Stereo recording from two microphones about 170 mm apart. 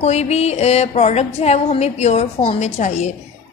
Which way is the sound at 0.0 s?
40° left (ahead or behind).